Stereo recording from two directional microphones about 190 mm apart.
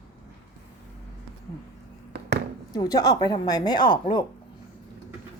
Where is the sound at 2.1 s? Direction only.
60° right (ahead or behind).